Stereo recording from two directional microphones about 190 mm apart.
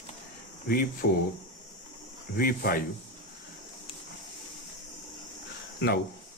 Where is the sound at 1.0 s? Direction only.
60° left (ahead or behind).